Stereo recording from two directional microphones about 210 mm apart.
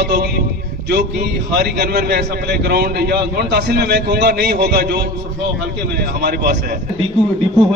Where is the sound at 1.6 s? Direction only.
50° right (ahead or behind).